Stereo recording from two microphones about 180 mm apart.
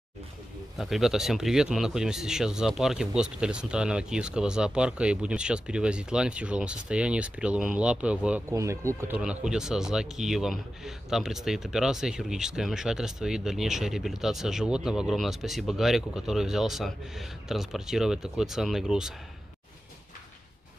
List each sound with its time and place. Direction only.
0.7 s speech: centre (ahead or behind)
9.2 s speech: 5° right (ahead or behind)